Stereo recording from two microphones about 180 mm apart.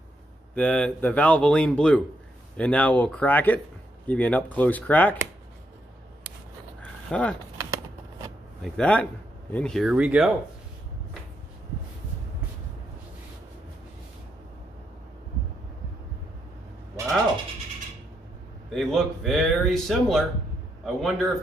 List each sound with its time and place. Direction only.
0.6 s a man's voice: 5° left (ahead or behind)
6.8 s dog: 5° left (ahead or behind)
8.6 s a man's voice: 5° left (ahead or behind)
17.0 s cat: 15° right (ahead or behind)
18.8 s a man's voice: centre (ahead or behind)